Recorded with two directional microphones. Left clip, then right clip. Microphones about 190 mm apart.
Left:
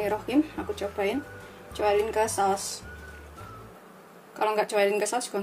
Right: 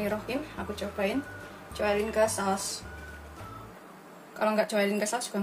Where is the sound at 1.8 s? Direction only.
40° left (ahead or behind).